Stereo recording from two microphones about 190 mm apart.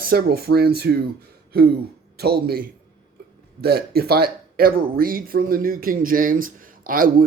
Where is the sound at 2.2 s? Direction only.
55° right (ahead or behind).